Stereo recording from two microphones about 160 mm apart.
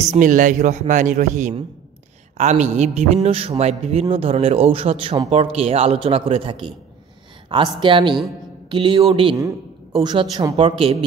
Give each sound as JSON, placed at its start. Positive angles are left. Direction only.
{"t": 0.0, "sound": "a man's voice", "side_deg": -50}
{"t": 10.5, "sound": "a man's voice", "side_deg": -40}